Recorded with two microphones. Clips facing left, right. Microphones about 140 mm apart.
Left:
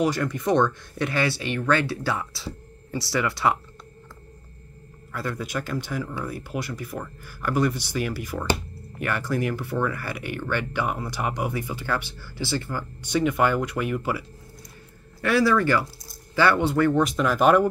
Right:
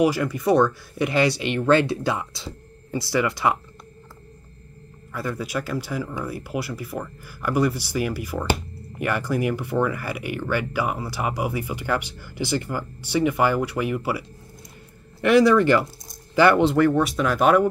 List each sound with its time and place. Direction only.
0.0 s speech: 5° right (ahead or behind)
5.1 s speech: 5° right (ahead or behind)
15.1 s speech: 20° right (ahead or behind)
16.1 s a sound: 15° right (ahead or behind)
16.7 s speech: 5° right (ahead or behind)